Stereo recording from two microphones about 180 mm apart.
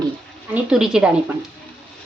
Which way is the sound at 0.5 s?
5° right (ahead or behind).